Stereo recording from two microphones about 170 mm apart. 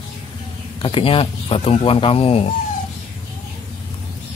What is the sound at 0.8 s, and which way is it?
Speech, 30° left (ahead or behind).